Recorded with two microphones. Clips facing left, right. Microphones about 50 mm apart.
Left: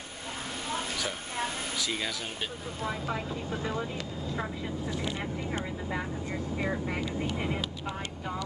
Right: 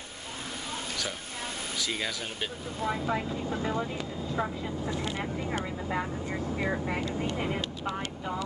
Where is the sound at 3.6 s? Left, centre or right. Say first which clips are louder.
Right 2 dB; right.